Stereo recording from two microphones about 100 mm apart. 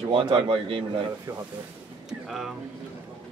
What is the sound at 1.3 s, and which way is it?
Speech, 40° right (ahead or behind).